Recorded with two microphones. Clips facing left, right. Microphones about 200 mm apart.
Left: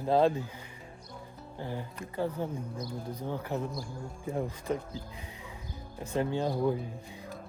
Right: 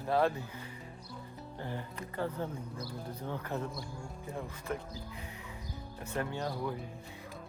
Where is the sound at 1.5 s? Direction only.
10° left (ahead or behind).